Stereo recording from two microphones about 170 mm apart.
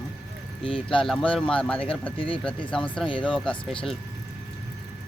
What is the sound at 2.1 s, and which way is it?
Speech, 30° left (ahead or behind).